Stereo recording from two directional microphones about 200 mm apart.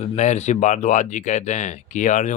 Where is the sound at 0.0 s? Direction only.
35° left (ahead or behind).